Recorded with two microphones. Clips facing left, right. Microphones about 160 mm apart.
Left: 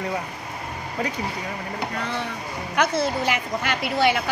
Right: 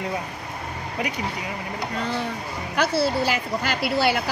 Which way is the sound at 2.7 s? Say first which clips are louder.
Right 1 dB; 35° right (ahead or behind).